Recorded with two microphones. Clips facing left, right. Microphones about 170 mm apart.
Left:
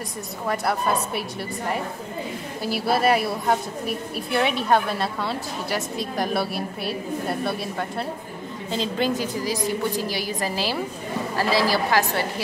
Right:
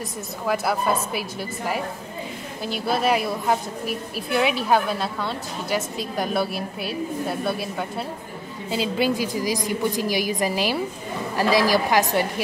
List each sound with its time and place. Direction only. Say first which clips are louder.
0.5 s a woman's voice: right 1 dB; centre (ahead or behind)
2.6 s a woman's voice: left 2 dB; 5° left (ahead or behind); by 12.3 s 15° right (ahead or behind)